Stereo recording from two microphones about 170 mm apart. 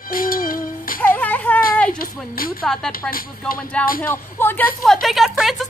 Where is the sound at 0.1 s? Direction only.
55° left (ahead or behind).